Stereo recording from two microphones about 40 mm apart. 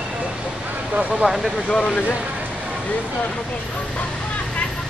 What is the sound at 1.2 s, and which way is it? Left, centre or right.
Speech, right.